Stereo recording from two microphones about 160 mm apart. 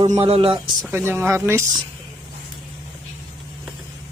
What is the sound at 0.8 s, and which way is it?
Speech, 15° right (ahead or behind).